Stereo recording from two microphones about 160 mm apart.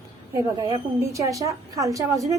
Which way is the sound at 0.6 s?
20° right (ahead or behind).